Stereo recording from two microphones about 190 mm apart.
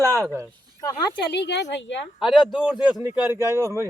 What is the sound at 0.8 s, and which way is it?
Speech, 20° left (ahead or behind).